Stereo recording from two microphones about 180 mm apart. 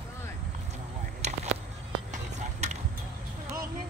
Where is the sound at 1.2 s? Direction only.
40° right (ahead or behind).